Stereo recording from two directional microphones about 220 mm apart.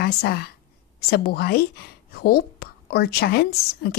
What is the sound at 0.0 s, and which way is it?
A woman's voice, 45° left (ahead or behind).